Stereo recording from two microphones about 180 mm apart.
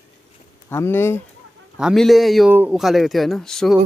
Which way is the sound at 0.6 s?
15° left (ahead or behind).